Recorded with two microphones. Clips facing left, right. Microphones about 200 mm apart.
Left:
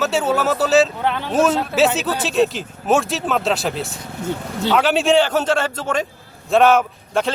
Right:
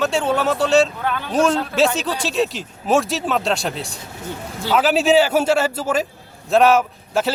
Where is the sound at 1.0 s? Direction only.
25° left (ahead or behind).